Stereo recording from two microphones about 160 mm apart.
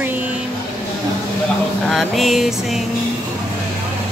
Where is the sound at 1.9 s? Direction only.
Centre (ahead or behind).